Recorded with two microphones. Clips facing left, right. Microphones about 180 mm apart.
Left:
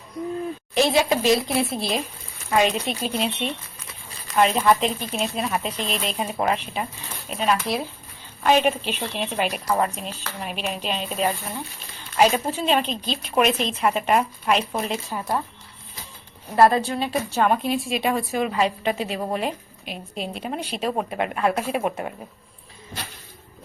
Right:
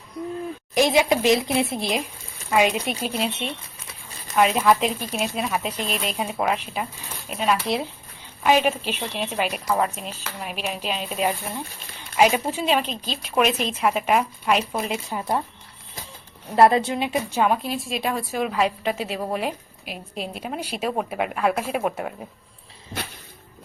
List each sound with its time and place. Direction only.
0.7 s a woman's voice: 15° right (ahead or behind)
16.6 s a woman's voice: 20° right (ahead or behind)
17.4 s a woman's voice: centre (ahead or behind)